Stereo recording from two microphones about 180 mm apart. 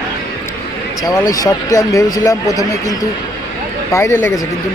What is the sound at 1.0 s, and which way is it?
Speech, 20° left (ahead or behind).